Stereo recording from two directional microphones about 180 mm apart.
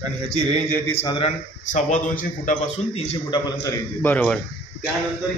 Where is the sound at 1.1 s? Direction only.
30° left (ahead or behind).